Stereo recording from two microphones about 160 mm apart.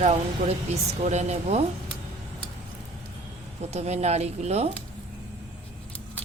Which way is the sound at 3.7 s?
40° right (ahead or behind).